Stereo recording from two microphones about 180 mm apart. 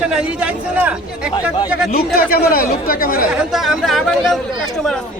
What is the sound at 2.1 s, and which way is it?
Speech, 55° left (ahead or behind).